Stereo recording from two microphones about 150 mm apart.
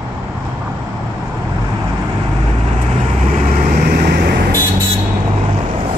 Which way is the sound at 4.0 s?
90° right.